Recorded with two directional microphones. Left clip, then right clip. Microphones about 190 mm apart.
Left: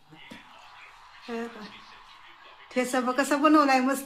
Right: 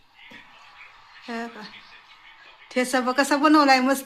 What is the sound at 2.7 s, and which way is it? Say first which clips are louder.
Speech: right 4 dB; 35° right (ahead or behind).